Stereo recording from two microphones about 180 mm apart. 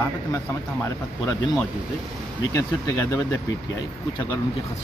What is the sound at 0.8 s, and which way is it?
Speech, 20° left (ahead or behind).